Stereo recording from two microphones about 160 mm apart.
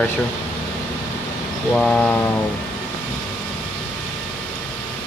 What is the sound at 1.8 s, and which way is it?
Speech, 5° left (ahead or behind).